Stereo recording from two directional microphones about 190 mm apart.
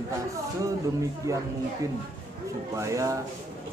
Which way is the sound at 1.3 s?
15° right (ahead or behind).